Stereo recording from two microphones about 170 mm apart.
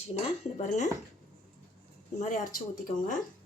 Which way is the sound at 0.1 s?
40° left (ahead or behind).